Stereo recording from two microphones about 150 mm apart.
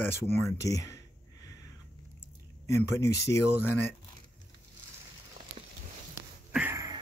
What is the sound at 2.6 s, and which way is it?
Speech, 20° left (ahead or behind).